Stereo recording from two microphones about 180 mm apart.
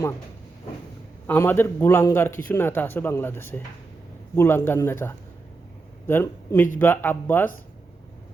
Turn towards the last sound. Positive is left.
turn(degrees=10)  # may be behind; listen again after turning